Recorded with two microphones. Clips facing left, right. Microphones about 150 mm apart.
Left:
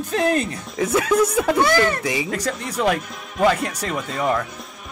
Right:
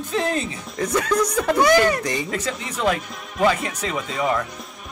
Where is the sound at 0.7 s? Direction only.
5° left (ahead or behind).